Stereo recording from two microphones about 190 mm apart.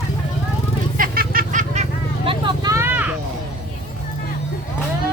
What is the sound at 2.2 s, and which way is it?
Vehicle, 20° right (ahead or behind).